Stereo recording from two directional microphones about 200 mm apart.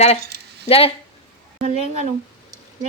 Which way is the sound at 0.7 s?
30° left (ahead or behind).